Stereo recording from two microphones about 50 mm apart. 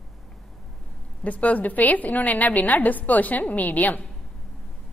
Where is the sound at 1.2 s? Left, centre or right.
Left.